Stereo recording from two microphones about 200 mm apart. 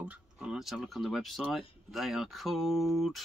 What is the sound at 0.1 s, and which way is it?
Speech, 5° right (ahead or behind).